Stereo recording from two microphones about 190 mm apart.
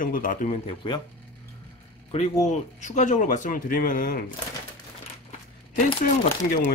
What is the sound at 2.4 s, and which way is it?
Speech, 40° left (ahead or behind).